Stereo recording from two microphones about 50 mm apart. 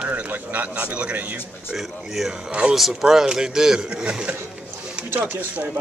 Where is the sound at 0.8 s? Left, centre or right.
Right.